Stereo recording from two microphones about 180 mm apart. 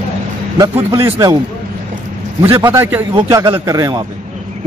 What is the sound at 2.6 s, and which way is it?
Speech, 10° right (ahead or behind).